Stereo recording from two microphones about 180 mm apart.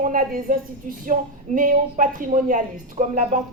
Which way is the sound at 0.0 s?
50° right (ahead or behind).